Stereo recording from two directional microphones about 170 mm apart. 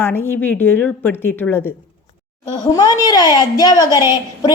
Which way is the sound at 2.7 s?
25° left (ahead or behind).